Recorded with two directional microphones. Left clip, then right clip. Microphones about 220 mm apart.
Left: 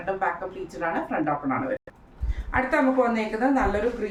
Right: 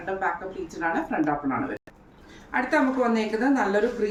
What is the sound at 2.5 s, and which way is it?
Speech, 10° left (ahead or behind).